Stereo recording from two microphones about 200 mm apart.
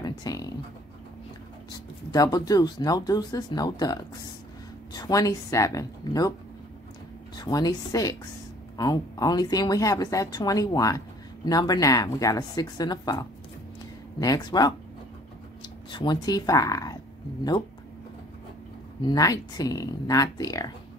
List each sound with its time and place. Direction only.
0.0 s music: 20° left (ahead or behind)
2.0 s speech: 20° left (ahead or behind)
7.3 s speech: 20° left (ahead or behind)
15.9 s speech: 20° left (ahead or behind)
19.0 s speech: 20° left (ahead or behind)